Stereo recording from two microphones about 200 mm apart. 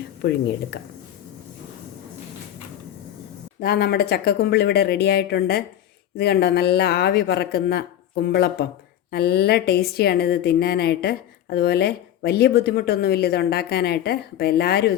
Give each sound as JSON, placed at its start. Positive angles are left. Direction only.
{"t": 0.2, "sound": "a woman's voice", "side_deg": 55}
{"t": 3.6, "sound": "a woman's voice", "side_deg": 50}